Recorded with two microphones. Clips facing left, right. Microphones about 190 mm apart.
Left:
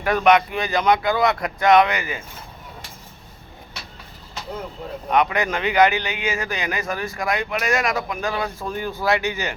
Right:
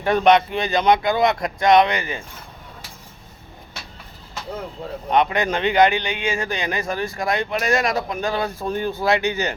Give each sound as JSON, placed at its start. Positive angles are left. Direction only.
{"t": 0.0, "sound": "a man's voice", "side_deg": -30}
{"t": 5.1, "sound": "a man's voice", "side_deg": -25}